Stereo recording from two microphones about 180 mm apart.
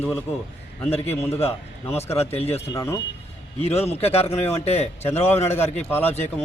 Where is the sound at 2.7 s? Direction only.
15° left (ahead or behind).